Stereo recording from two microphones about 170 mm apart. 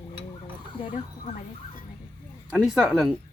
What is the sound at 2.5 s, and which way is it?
Speech, centre (ahead or behind).